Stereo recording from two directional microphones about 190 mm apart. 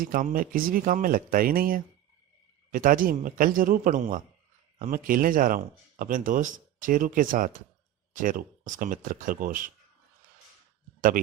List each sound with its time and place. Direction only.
0.0 s speech: 45° right (ahead or behind)